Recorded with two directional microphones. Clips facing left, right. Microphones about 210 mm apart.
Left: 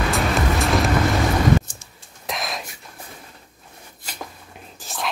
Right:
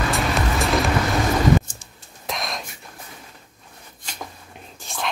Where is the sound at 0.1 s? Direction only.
Centre (ahead or behind).